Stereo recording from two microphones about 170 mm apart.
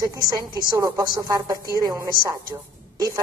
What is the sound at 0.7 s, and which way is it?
A woman's voice, 20° right (ahead or behind).